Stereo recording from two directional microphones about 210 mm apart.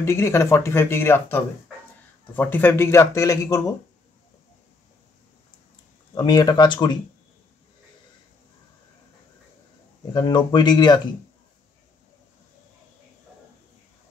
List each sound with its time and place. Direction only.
0.0 s speech: 15° left (ahead or behind)
6.1 s speech: 20° left (ahead or behind)
10.1 s speech: 20° left (ahead or behind)